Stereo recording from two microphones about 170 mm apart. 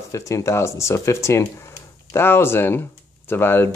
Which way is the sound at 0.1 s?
20° left (ahead or behind).